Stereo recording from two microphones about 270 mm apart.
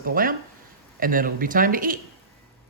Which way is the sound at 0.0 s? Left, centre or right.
Right.